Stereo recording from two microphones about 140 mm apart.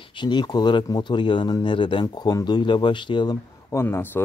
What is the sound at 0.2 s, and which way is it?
Speech, 30° left (ahead or behind).